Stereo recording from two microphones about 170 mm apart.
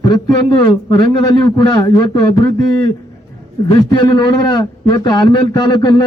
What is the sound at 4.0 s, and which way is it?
A man's voice, 25° left (ahead or behind).